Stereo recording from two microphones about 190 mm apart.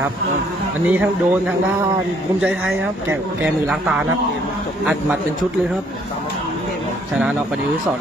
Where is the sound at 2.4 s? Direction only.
5° right (ahead or behind).